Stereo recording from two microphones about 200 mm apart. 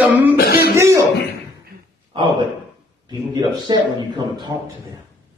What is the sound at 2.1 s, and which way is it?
A man's voice, 25° right (ahead or behind).